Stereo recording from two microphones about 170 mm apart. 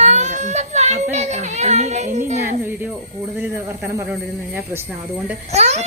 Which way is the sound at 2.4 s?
10° right (ahead or behind).